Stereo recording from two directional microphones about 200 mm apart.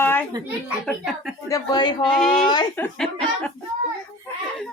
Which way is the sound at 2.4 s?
20° left (ahead or behind).